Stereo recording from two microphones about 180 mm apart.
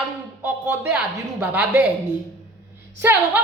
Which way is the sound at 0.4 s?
10° right (ahead or behind).